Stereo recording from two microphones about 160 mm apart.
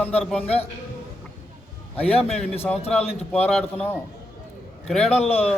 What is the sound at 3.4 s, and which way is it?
A man's voice, 10° left (ahead or behind).